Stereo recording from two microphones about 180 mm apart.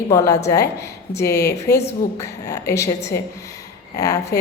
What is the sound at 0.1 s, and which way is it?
A woman's voice, 15° left (ahead or behind).